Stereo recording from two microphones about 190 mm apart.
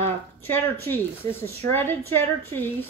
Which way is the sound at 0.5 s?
10° left (ahead or behind).